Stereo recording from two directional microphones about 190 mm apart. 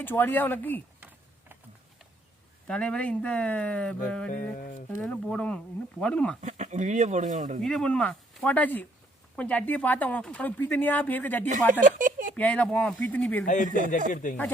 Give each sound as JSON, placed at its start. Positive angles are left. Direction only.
{"t": 0.0, "sound": "speech", "side_deg": 10}
{"t": 0.9, "sound": "a sound", "side_deg": -10}
{"t": 2.6, "sound": "speech", "side_deg": 5}
{"t": 4.3, "sound": "a sound", "side_deg": 45}
{"t": 4.9, "sound": "speech", "side_deg": 5}
{"t": 6.4, "sound": "speech", "side_deg": -40}
{"t": 7.6, "sound": "speech", "side_deg": 5}
{"t": 11.4, "sound": "speech", "side_deg": -45}
{"t": 12.4, "sound": "speech", "side_deg": 5}
{"t": 13.4, "sound": "a sound", "side_deg": 40}
{"t": 13.7, "sound": "speech", "side_deg": -45}
{"t": 14.1, "sound": "a sound", "side_deg": 45}